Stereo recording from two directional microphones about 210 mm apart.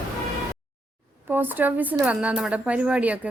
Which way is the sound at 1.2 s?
10° right (ahead or behind).